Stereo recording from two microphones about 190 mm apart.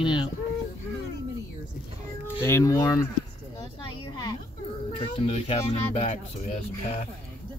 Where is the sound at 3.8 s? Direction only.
20° left (ahead or behind).